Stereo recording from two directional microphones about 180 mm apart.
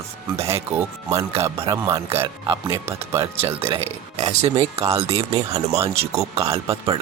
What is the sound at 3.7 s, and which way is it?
Speech, 35° right (ahead or behind).